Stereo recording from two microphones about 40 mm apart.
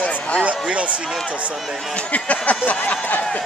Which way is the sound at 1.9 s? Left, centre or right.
Left.